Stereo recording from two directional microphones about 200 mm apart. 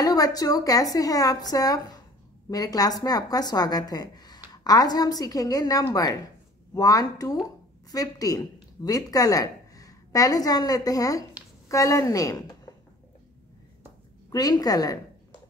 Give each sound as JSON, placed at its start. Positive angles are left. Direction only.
{"t": 0.0, "sound": "a woman's voice", "side_deg": 20}
{"t": 14.3, "sound": "a woman's voice", "side_deg": 20}